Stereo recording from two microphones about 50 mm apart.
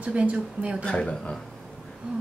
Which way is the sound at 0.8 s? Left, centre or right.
Centre.